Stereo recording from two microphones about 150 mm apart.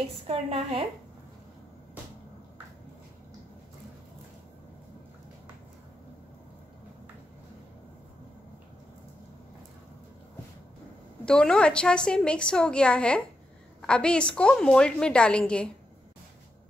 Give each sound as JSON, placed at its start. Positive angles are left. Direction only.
{"t": 0.3, "sound": "a woman's voice", "side_deg": -40}
{"t": 11.2, "sound": "a woman's voice", "side_deg": 5}